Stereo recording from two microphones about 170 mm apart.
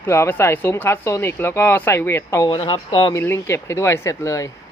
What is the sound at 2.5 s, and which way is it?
Speech, 30° left (ahead or behind).